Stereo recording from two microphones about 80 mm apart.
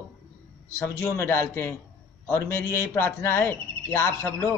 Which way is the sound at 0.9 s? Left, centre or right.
Left.